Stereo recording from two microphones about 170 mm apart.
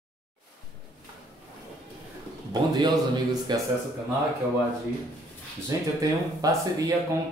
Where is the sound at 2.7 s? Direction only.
25° right (ahead or behind).